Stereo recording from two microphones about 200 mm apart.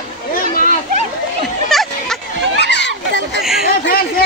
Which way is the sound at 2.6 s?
60° left (ahead or behind).